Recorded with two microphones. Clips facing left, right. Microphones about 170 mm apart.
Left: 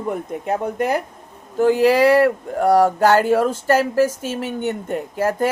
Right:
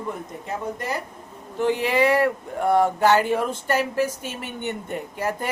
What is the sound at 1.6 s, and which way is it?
Speech, 40° left (ahead or behind).